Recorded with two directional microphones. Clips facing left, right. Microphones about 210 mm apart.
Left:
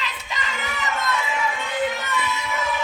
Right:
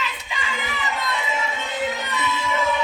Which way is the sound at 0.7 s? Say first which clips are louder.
Left 3 dB; 20° right (ahead or behind).